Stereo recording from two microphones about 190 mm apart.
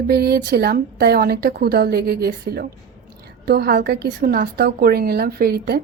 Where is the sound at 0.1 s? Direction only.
55° right (ahead or behind).